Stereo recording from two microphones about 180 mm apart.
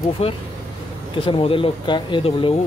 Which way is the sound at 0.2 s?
35° left (ahead or behind).